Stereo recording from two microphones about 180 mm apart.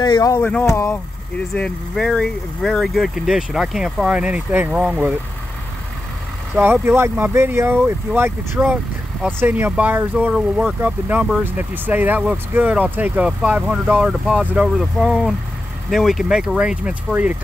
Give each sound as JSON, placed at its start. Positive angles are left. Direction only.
{"t": 0.0, "sound": "speech", "side_deg": 20}
{"t": 1.5, "sound": "speech", "side_deg": 5}
{"t": 6.5, "sound": "speech", "side_deg": -10}